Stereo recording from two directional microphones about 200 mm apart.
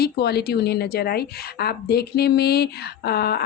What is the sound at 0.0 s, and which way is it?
A woman's voice, 55° left (ahead or behind).